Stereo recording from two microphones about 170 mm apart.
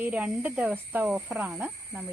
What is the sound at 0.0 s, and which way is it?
Speech, 10° right (ahead or behind).